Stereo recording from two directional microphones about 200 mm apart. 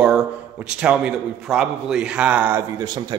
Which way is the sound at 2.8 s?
20° right (ahead or behind).